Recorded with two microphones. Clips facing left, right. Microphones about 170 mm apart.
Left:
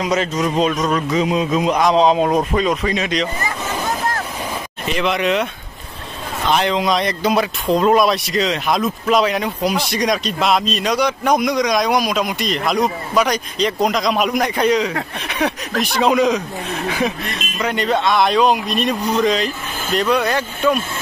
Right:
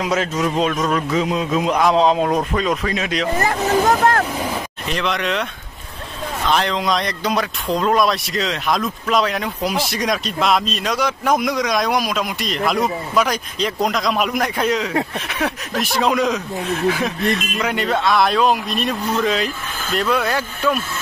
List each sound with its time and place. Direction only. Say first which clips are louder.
0.0 s speech: left 1 dB; 5° right (ahead or behind)
3.3 s vehicle: right 7 dB; 45° right (ahead or behind)
4.8 s speech: left 4 dB; 5° left (ahead or behind)
6.5 s speech: left 3 dB; 5° left (ahead or behind)
17.6 s speech: left 2 dB; 5° right (ahead or behind)